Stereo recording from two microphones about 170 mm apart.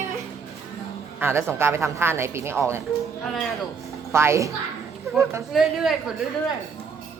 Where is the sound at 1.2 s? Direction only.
15° right (ahead or behind).